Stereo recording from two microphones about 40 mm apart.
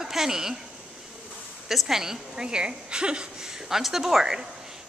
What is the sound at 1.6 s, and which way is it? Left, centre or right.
A woman's voice, centre.